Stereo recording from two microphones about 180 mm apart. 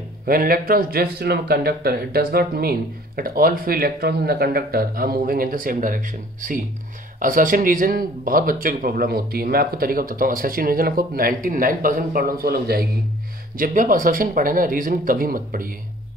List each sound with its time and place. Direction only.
0.2 s speech: 55° right (ahead or behind)